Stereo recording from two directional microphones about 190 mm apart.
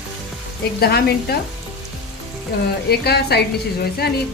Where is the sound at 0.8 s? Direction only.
55° left (ahead or behind).